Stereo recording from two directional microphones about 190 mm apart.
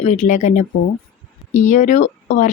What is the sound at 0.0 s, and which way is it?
Speech, 40° left (ahead or behind).